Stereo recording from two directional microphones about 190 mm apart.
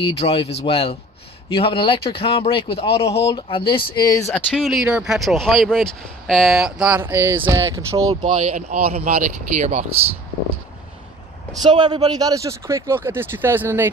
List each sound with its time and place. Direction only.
0.0 s speech: 30° left (ahead or behind); by 8.2 s 15° right (ahead or behind)
8.2 s speech: 40° right (ahead or behind)
11.6 s speech: 20° right (ahead or behind)